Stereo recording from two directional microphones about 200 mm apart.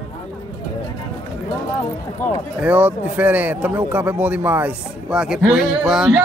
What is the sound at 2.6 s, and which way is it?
Speech, 5° right (ahead or behind).